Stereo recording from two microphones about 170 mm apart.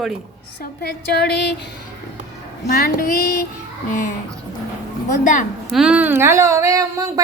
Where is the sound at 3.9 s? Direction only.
50° left (ahead or behind).